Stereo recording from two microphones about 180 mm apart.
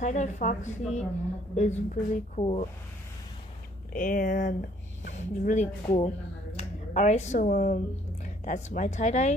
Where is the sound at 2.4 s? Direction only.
35° left (ahead or behind).